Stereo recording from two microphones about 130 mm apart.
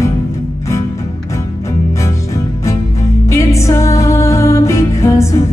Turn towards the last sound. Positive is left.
turn(degrees=25)  # may be behind; listen again after turning